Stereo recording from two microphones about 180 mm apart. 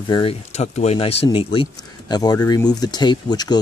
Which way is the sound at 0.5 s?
35° left (ahead or behind).